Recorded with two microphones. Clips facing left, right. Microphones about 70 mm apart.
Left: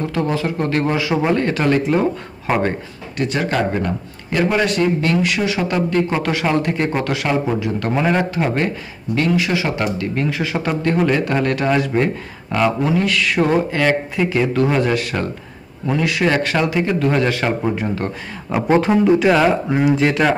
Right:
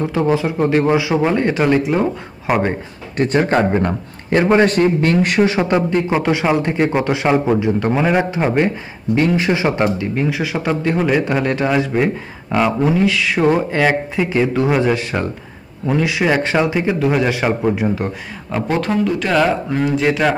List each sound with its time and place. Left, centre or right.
0.0 s speech: centre
3.2 s a man's voice: right
5.6 s speech: right
7.9 s speech: centre
8.2 s speech: centre
9.9 s speech: centre
13.0 s speech: centre
18.7 s speech: centre
20.0 s speech: centre